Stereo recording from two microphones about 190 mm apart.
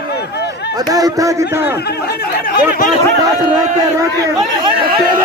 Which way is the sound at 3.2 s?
20° right (ahead or behind).